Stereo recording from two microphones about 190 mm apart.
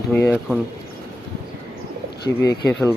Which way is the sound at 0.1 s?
10° left (ahead or behind).